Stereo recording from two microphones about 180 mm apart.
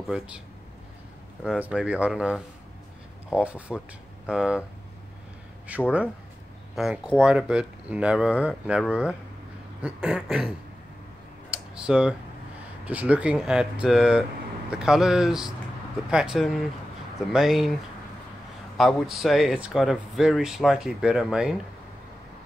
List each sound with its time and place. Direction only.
0.1 s speech: 5° right (ahead or behind)
1.4 s speech: 5° right (ahead or behind)
5.7 s speech: 5° right (ahead or behind)
11.5 s computer keyboard: 5° right (ahead or behind)
12.8 s speech: 10° right (ahead or behind)
18.8 s speech: centre (ahead or behind)